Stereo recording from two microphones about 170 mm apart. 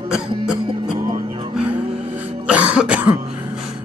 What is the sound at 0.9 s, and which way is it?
Music, 25° right (ahead or behind).